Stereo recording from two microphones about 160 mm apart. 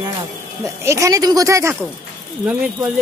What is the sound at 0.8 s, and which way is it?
Speech, 20° right (ahead or behind).